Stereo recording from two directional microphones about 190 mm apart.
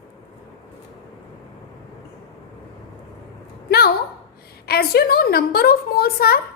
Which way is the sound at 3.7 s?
55° left (ahead or behind).